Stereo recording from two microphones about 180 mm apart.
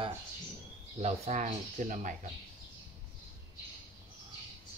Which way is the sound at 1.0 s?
40° right (ahead or behind).